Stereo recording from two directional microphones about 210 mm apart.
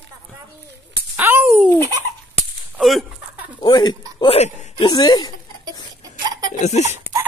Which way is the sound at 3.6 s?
20° left (ahead or behind).